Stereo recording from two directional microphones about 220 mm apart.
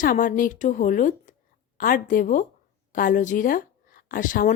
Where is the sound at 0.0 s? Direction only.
40° left (ahead or behind).